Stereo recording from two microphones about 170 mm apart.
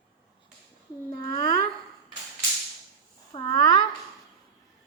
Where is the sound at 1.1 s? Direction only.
25° left (ahead or behind).